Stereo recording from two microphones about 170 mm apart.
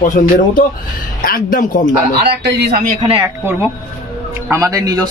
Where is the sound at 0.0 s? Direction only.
50° left (ahead or behind).